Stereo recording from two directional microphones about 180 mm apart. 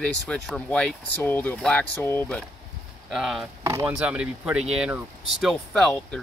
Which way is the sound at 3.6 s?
15° right (ahead or behind).